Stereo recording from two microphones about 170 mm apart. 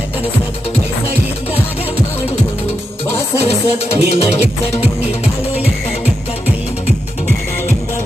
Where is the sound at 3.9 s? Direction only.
35° left (ahead or behind).